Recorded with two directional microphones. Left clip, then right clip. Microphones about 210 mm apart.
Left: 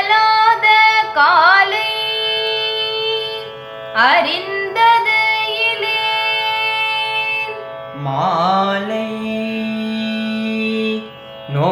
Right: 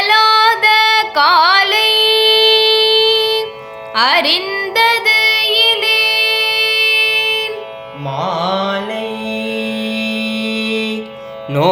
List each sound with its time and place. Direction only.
0.0 s music: 55° right (ahead or behind)
8.0 s mantra: 30° right (ahead or behind)
9.5 s music: 50° right (ahead or behind)